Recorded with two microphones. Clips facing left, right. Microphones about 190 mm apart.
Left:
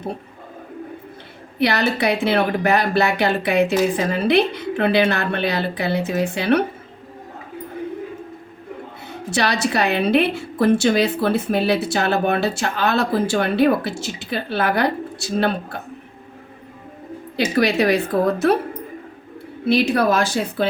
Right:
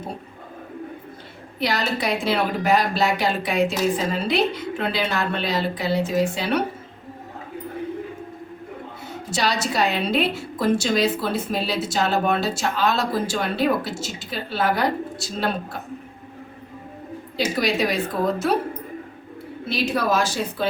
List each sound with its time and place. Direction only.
1.5 s a woman's voice: 65° left (ahead or behind)
9.3 s a woman's voice: 65° left (ahead or behind)
17.3 s a woman's voice: 65° left (ahead or behind)
19.6 s a woman's voice: 60° left (ahead or behind)